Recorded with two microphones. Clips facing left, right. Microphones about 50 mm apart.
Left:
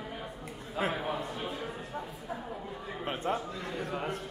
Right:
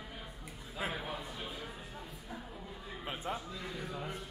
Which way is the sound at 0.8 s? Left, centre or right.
Left.